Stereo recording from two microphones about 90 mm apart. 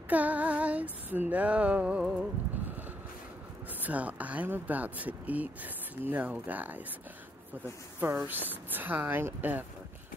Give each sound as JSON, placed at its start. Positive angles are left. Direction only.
{"t": 0.1, "sound": "speech", "side_deg": -15}
{"t": 3.8, "sound": "speech", "side_deg": -15}
{"t": 8.0, "sound": "speech", "side_deg": -25}